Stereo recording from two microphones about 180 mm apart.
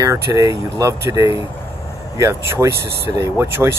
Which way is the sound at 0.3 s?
15° right (ahead or behind).